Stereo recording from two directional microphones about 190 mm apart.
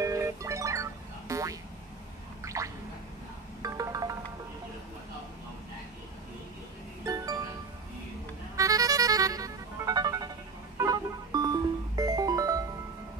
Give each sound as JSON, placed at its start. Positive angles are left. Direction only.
{"t": 0.0, "sound": "music", "side_deg": -15}
{"t": 2.4, "sound": "gargling", "side_deg": -15}
{"t": 3.6, "sound": "music", "side_deg": -20}
{"t": 8.5, "sound": "music", "side_deg": -20}